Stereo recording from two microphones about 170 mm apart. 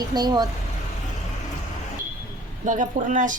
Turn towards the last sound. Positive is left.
turn(degrees=-50)  # may be behind; listen again after turning